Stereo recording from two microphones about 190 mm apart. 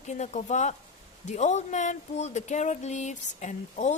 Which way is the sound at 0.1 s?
40° left (ahead or behind).